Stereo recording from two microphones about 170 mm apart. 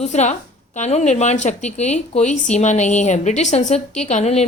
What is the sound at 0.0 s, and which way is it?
A woman's voice, 45° left (ahead or behind).